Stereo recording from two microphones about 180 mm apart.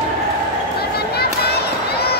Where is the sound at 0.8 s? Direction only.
60° left (ahead or behind).